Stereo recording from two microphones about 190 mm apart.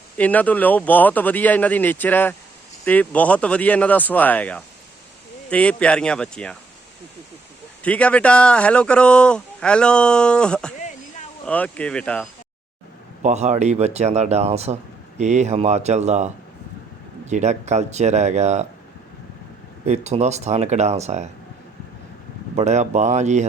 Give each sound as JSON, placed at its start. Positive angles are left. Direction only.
{"t": 0.2, "sound": "speech", "side_deg": 10}
{"t": 7.8, "sound": "speech", "side_deg": 5}
{"t": 13.2, "sound": "speech", "side_deg": -35}
{"t": 19.8, "sound": "speech", "side_deg": -35}
{"t": 22.5, "sound": "speech", "side_deg": -35}